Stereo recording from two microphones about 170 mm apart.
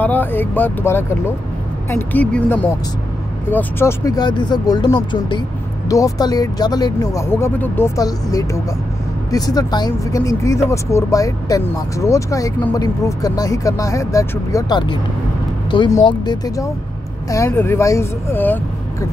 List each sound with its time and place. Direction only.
0.0 s speech: 10° left (ahead or behind)
2.1 s speech: 10° left (ahead or behind)